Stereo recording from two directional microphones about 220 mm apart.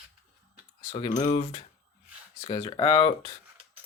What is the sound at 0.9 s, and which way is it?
Speech, 20° left (ahead or behind).